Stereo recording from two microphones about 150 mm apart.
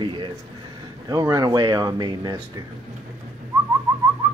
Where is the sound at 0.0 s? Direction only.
30° right (ahead or behind).